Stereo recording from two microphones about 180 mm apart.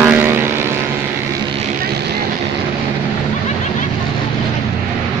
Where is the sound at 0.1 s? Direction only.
10° right (ahead or behind).